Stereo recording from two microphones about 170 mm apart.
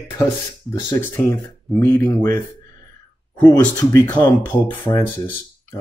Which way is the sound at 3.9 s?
10° left (ahead or behind).